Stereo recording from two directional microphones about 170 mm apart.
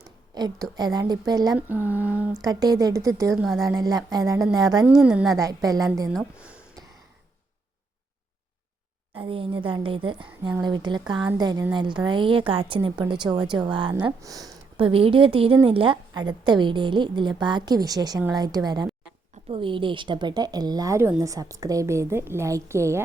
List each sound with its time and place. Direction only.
0.3 s speech: 25° right (ahead or behind)
1.5 s a sound: 10° right (ahead or behind)
2.4 s speech: 20° right (ahead or behind)
3.3 s a woman's voice: centre (ahead or behind)
3.6 s speech: 20° right (ahead or behind)
4.9 s a woman's voice: 5° right (ahead or behind)
5.4 s speech: 20° right (ahead or behind)
6.1 s a sound: 5° right (ahead or behind)
9.1 s a woman's voice: 30° right (ahead or behind)
14.8 s a woman's voice: 35° right (ahead or behind); by 23.0 s 15° right (ahead or behind)